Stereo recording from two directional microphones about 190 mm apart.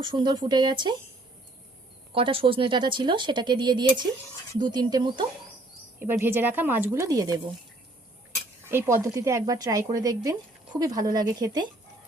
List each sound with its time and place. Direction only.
0.0 s speech: 25° right (ahead or behind)
2.1 s speech: 30° right (ahead or behind)
6.0 s speech: 10° right (ahead or behind)
8.6 s speech: 15° right (ahead or behind)